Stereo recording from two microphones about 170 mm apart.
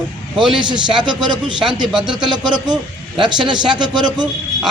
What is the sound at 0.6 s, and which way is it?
A man's voice, 25° right (ahead or behind).